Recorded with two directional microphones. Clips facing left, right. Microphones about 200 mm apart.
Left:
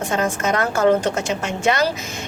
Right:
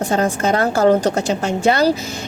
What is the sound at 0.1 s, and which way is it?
A woman's voice, 35° right (ahead or behind).